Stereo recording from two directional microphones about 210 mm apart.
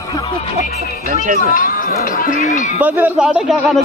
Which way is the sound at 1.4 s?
40° left (ahead or behind).